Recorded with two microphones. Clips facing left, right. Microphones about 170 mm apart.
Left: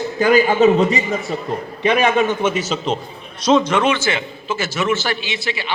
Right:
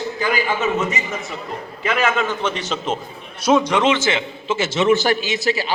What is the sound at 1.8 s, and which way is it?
A man's voice, 20° left (ahead or behind).